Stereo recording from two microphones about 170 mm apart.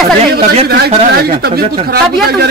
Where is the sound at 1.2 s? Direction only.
60° right (ahead or behind).